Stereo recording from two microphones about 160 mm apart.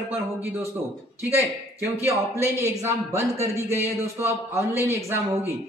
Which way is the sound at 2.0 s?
15° right (ahead or behind).